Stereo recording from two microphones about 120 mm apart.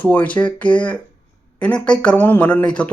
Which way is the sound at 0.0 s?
15° left (ahead or behind).